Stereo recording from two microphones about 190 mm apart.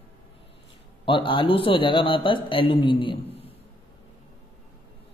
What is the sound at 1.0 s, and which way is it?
A man's voice, 25° left (ahead or behind).